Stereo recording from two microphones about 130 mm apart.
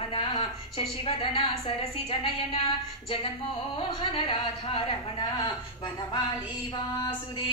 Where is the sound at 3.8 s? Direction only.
40° left (ahead or behind).